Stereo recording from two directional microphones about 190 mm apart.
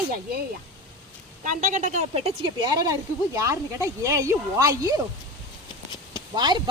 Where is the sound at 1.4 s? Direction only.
45° right (ahead or behind).